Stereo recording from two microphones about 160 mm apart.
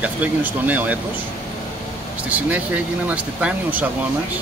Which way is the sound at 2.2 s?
10° right (ahead or behind).